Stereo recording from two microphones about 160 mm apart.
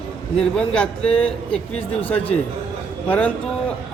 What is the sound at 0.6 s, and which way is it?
A man's voice, 5° left (ahead or behind).